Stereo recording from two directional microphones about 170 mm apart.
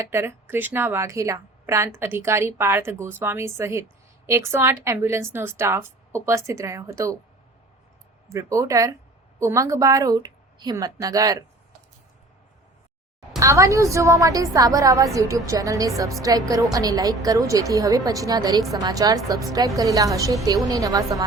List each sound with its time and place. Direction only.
0.1 s a woman's voice: 15° right (ahead or behind)
8.3 s a woman's voice: 20° right (ahead or behind)
13.4 s a woman's voice: 20° right (ahead or behind)